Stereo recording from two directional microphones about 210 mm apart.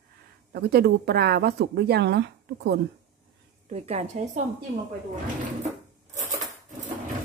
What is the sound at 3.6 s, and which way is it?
Speech, 30° right (ahead or behind).